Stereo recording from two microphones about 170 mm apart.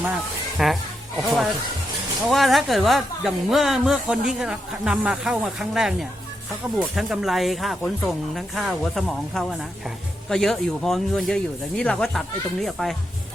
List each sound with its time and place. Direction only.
0.6 s speech: centre (ahead or behind)